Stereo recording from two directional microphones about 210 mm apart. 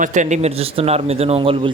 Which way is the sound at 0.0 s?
35° right (ahead or behind).